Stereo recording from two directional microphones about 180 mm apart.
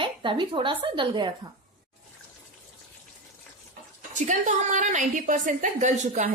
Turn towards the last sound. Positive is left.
turn(degrees=-45)  # may be behind; listen again after turning